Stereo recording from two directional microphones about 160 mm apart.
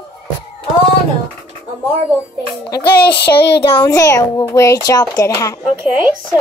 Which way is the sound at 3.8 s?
20° left (ahead or behind).